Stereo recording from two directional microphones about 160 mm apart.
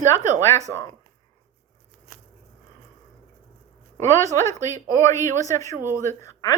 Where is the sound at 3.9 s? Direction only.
20° left (ahead or behind).